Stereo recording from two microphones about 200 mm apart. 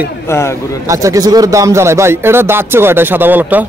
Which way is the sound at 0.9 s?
15° right (ahead or behind).